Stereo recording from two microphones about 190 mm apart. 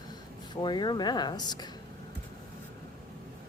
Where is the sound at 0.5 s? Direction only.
25° left (ahead or behind).